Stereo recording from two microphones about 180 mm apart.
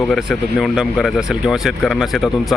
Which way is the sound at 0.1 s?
Centre (ahead or behind).